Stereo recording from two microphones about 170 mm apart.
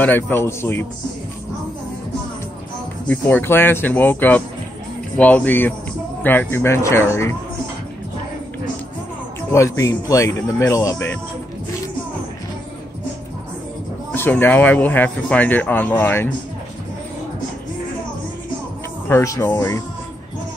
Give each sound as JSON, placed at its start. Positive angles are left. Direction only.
{"t": 0.0, "sound": "speech", "side_deg": 10}
{"t": 3.1, "sound": "speech", "side_deg": 10}
{"t": 9.5, "sound": "speech", "side_deg": 20}
{"t": 14.1, "sound": "speech", "side_deg": 10}
{"t": 19.0, "sound": "speech", "side_deg": 15}